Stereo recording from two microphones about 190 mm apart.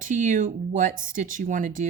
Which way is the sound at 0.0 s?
40° right (ahead or behind).